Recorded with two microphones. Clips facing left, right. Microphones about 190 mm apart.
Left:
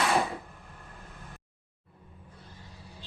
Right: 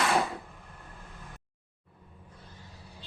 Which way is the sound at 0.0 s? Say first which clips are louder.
Even; centre (ahead or behind).